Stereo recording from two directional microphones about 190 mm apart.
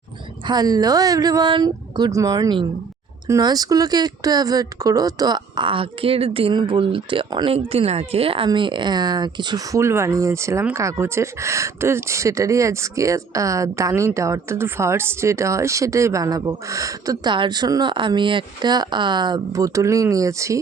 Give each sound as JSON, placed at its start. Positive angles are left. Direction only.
{"t": 0.4, "sound": "speech", "side_deg": -20}